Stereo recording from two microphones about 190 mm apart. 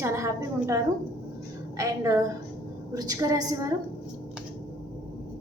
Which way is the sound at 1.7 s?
15° right (ahead or behind).